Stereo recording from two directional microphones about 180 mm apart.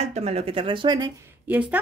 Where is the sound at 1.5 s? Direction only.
10° right (ahead or behind).